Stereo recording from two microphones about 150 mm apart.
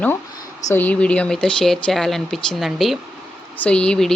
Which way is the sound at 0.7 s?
10° left (ahead or behind).